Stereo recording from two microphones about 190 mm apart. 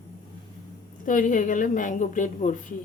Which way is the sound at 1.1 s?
45° left (ahead or behind).